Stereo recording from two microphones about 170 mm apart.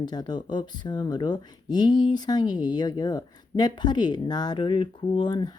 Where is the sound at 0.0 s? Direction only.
25° left (ahead or behind).